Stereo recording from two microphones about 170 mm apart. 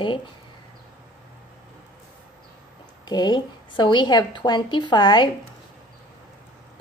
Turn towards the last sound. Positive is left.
turn(degrees=25)  # may be behind; listen again after turning